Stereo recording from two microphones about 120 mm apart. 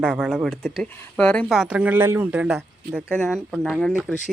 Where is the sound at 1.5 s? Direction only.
5° right (ahead or behind).